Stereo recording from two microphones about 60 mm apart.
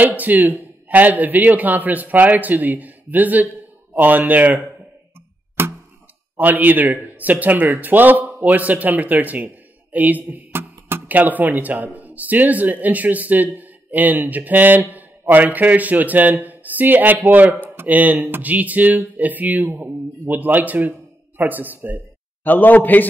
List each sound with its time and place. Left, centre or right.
0.0 s a man's voice: right
5.6 s a sound: right
6.3 s a man's voice: right
22.4 s a man's voice: left